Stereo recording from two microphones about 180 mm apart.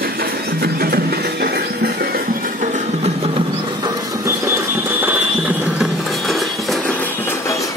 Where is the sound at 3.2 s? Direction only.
30° right (ahead or behind).